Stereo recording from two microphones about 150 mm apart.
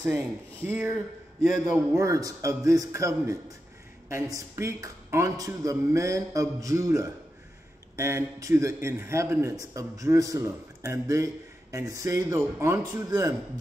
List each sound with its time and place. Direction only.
0.0 s a man's voice: 10° right (ahead or behind)